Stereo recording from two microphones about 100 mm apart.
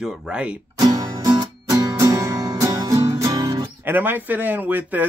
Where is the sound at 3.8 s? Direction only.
20° right (ahead or behind).